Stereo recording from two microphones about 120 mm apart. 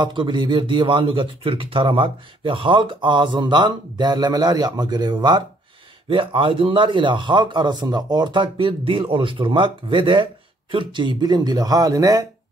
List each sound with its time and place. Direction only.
0.0 s a man's voice: 40° right (ahead or behind)